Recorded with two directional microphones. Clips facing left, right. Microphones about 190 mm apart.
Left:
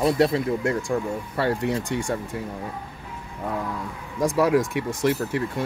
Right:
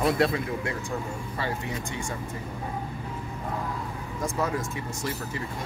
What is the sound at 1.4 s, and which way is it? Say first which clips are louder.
Speech: left 9 dB; 65° left (ahead or behind).